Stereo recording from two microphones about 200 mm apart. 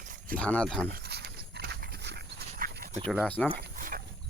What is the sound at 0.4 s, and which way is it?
Speech, 5° left (ahead or behind).